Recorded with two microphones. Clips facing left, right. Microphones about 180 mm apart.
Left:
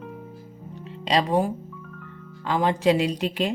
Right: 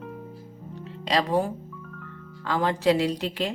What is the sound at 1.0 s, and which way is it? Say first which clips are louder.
A woman's voice: left 2 dB; 20° left (ahead or behind).